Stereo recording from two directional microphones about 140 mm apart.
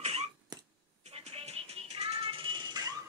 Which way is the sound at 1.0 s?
45° right (ahead or behind).